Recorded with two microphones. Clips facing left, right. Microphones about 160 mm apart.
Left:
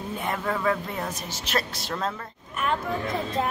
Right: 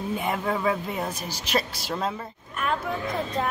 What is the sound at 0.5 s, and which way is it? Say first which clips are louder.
Speech: even; 15° right (ahead or behind).